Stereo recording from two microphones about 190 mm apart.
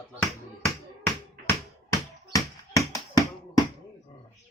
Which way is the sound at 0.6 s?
10° left (ahead or behind).